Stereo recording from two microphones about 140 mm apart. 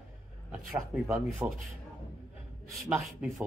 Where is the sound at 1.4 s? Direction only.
20° right (ahead or behind).